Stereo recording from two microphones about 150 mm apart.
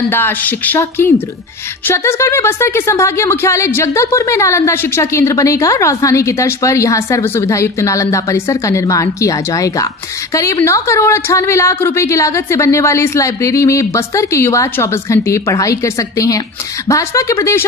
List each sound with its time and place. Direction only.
0.1 s speech: 15° left (ahead or behind)